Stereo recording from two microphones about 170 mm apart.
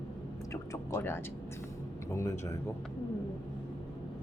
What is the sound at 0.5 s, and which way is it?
Speech, 15° left (ahead or behind).